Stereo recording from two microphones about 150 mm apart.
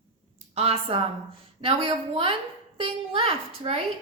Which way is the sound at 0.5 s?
45° right (ahead or behind).